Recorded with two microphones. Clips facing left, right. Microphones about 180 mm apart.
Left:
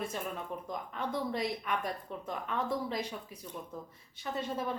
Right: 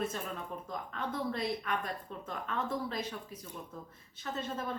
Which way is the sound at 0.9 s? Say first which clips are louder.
Left 1 dB; 15° left (ahead or behind).